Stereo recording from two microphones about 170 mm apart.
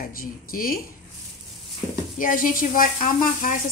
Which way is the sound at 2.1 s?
50° left (ahead or behind).